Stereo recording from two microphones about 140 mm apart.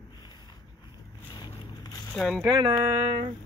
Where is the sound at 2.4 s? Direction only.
25° right (ahead or behind).